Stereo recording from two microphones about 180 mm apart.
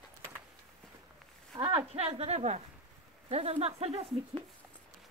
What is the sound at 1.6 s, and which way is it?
A woman's voice, 30° right (ahead or behind).